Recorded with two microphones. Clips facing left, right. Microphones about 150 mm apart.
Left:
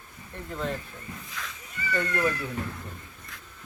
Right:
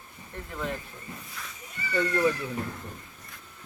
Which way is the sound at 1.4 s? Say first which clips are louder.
Left 7 dB; 90° left.